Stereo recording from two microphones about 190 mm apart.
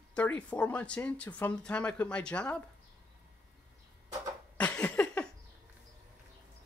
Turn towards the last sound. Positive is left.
turn(degrees=5)  # may be behind; listen again after turning